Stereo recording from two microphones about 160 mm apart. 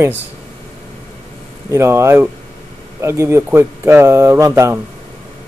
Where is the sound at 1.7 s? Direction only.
15° right (ahead or behind).